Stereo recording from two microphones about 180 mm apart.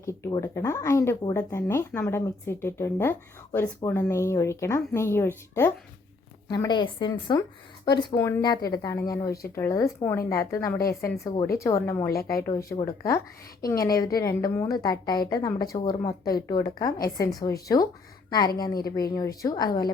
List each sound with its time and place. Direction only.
0.0 s speech: 20° left (ahead or behind)
6.5 s a woman's voice: 25° left (ahead or behind)
8.1 s a woman's voice: 15° left (ahead or behind)
12.1 s speech: 55° left (ahead or behind)
12.5 s a woman's voice: 20° left (ahead or behind)
18.9 s a woman's voice: 20° left (ahead or behind)